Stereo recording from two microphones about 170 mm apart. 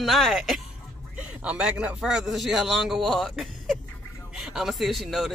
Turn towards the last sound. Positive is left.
turn(degrees=0)  # may be behind; listen again after turning